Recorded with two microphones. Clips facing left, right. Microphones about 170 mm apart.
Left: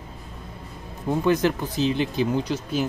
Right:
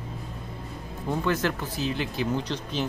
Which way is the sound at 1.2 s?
15° left (ahead or behind).